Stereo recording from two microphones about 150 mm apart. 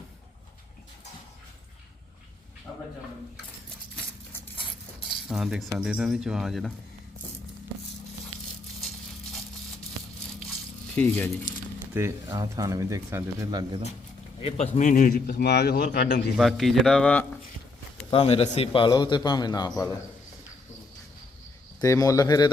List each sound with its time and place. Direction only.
2.7 s a sound: 10° left (ahead or behind)
5.3 s speech: centre (ahead or behind)
10.9 s speech: 10° left (ahead or behind)
11.9 s speech: 20° right (ahead or behind)
14.7 s speech: 60° left (ahead or behind); by 16.2 s 90° left
16.4 s speech: centre (ahead or behind)
18.1 s a man's voice: 40° left (ahead or behind); by 20.0 s 20° left (ahead or behind)
21.8 s speech: 25° left (ahead or behind)